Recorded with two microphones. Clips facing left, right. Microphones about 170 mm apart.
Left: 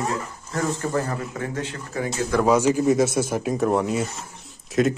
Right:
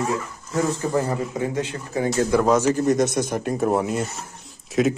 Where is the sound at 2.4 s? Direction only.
10° left (ahead or behind).